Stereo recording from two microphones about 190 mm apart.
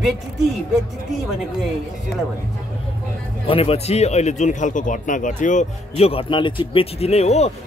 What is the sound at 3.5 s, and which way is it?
Speech, 30° left (ahead or behind).